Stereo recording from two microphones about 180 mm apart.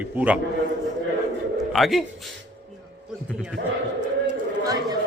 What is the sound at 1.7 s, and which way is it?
Speech, centre (ahead or behind).